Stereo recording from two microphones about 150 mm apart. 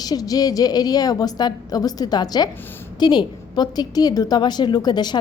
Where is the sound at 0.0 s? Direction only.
25° left (ahead or behind).